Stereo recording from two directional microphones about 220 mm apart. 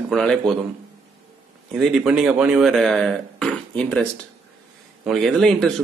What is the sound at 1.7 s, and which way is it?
Speech, centre (ahead or behind).